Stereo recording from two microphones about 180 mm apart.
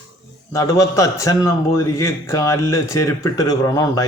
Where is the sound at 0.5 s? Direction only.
15° left (ahead or behind).